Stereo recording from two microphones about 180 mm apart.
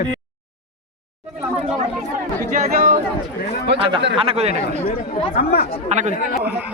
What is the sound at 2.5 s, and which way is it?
Chatter, 45° right (ahead or behind).